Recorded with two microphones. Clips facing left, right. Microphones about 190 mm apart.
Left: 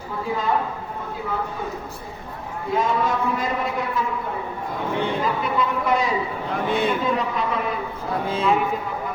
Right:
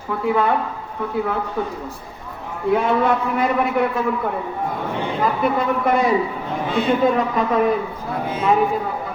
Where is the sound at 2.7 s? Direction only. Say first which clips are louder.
Right 5 dB; 65° right (ahead or behind).